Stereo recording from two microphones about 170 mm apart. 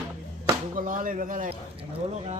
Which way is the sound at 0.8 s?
50° right (ahead or behind).